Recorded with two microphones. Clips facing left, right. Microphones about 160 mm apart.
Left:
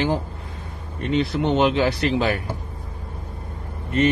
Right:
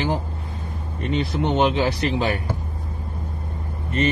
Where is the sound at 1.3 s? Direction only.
Centre (ahead or behind).